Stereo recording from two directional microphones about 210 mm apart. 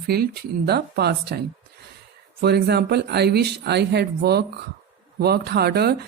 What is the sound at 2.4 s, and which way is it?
Speech, 50° right (ahead or behind).